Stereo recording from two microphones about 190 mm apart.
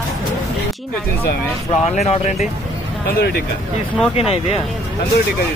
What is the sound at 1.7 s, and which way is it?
Speech, 35° left (ahead or behind).